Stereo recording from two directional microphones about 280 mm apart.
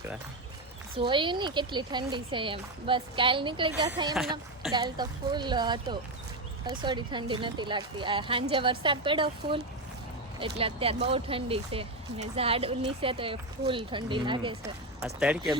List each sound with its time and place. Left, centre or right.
0.9 s speech: centre
10.6 s speech: centre
15.0 s speech: centre